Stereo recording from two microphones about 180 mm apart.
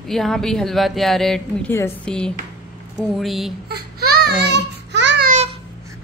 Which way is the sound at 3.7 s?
60° right (ahead or behind).